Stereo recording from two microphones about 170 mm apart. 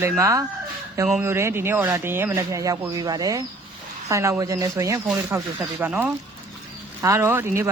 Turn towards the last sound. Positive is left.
turn(degrees=-15)  # may be behind; listen again after turning